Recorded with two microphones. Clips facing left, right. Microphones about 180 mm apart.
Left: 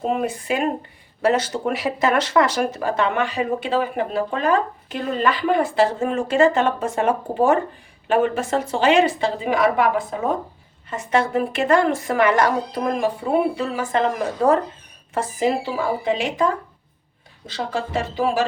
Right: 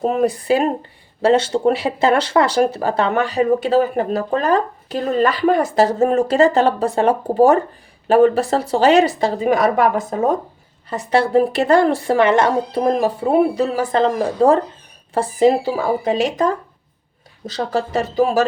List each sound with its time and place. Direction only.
0.0 s speech: 40° right (ahead or behind)